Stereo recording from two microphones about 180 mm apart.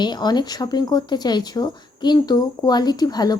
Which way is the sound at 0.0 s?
25° left (ahead or behind).